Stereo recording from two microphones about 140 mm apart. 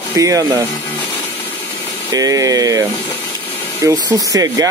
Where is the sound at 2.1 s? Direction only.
25° right (ahead or behind).